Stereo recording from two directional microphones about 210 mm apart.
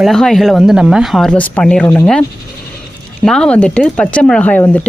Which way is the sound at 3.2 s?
5° left (ahead or behind).